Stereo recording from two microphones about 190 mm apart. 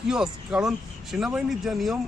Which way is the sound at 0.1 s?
5° right (ahead or behind).